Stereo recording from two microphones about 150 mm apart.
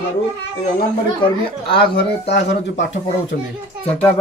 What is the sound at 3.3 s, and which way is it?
Speech, 90° left.